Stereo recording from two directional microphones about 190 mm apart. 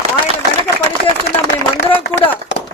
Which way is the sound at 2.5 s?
70° left (ahead or behind).